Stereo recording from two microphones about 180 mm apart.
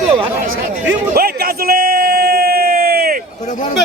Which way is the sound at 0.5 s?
90° right.